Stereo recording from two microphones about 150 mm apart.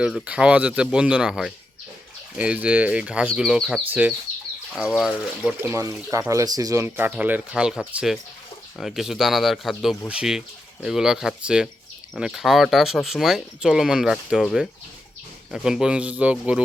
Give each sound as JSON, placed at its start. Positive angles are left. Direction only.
{"t": 0.0, "sound": "speech", "side_deg": -5}
{"t": 5.5, "sound": "speech", "side_deg": -20}